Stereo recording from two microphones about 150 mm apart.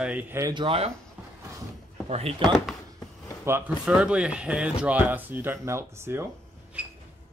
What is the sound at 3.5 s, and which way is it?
Speech, 15° right (ahead or behind).